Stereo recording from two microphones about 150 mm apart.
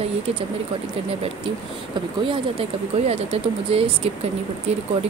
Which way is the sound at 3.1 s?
40° right (ahead or behind).